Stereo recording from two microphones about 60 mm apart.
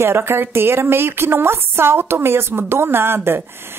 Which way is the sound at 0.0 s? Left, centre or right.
Right.